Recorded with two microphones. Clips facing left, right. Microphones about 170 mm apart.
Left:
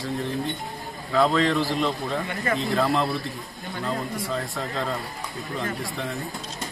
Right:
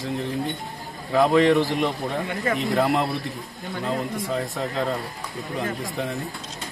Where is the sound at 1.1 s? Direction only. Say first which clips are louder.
Right 4 dB; 20° right (ahead or behind).